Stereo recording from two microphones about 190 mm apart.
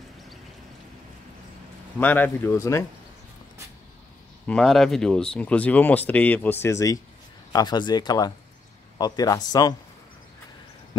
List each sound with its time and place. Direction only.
2.0 s speech: 10° left (ahead or behind)
4.5 s a man's voice: centre (ahead or behind); by 9.8 s 20° left (ahead or behind)